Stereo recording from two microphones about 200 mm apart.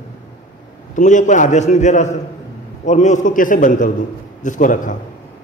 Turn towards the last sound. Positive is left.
turn(degrees=40)  # may be behind; listen again after turning